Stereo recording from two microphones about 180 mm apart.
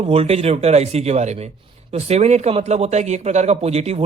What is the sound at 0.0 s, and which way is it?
Speech, 35° right (ahead or behind).